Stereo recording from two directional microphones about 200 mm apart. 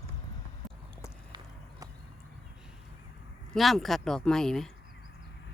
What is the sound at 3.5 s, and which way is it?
Speech, centre (ahead or behind).